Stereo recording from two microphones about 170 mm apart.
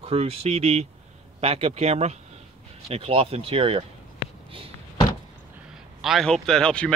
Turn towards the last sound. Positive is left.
turn(degrees=5)  # may be behind; listen again after turning